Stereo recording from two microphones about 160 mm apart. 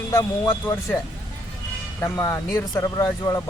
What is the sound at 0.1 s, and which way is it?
Speech, 15° left (ahead or behind).